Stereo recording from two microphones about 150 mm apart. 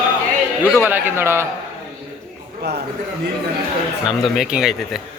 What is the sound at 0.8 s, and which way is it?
Speech, 10° right (ahead or behind).